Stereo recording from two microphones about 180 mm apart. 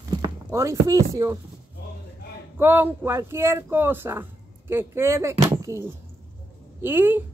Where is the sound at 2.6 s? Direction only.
10° right (ahead or behind).